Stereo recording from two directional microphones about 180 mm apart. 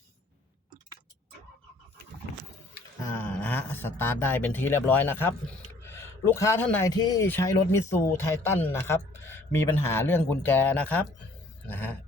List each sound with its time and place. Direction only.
3.0 s a man's voice: 15° left (ahead or behind)
6.9 s speech: 20° left (ahead or behind)
11.7 s a sound: 10° left (ahead or behind)